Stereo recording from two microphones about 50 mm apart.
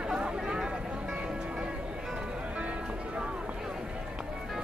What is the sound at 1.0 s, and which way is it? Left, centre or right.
Music, centre.